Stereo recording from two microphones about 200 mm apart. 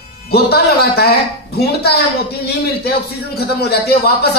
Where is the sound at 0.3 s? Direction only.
50° left (ahead or behind).